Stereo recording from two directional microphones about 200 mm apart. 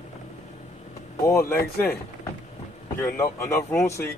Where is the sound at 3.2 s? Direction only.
15° left (ahead or behind).